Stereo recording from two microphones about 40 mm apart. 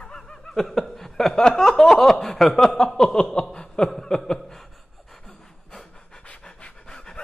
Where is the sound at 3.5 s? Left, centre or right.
Left.